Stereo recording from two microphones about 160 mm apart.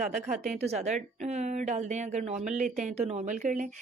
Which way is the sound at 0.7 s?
45° right (ahead or behind).